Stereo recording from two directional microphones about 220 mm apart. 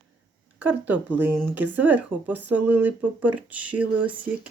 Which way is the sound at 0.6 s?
10° right (ahead or behind).